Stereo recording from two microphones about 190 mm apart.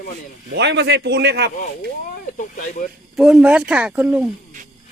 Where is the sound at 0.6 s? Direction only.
60° right (ahead or behind).